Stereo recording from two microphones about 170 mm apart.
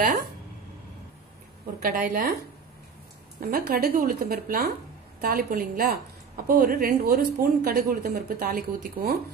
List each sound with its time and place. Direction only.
1.8 s a woman's voice: 55° right (ahead or behind)
3.3 s a woman's voice: 60° right (ahead or behind)